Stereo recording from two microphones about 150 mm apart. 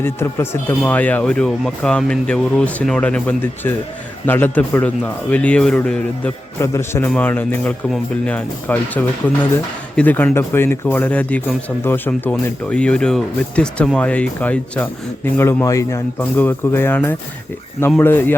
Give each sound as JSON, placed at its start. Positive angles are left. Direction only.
{"t": 0.0, "sound": "speech", "side_deg": 15}
{"t": 6.6, "sound": "speech", "side_deg": 20}